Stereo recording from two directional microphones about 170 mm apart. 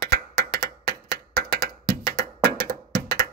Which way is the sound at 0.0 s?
70° right (ahead or behind).